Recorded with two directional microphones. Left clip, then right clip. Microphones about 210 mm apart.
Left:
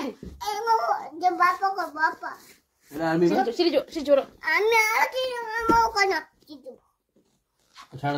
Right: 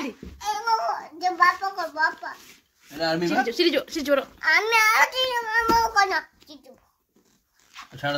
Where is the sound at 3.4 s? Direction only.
25° right (ahead or behind); by 5.8 s 40° right (ahead or behind).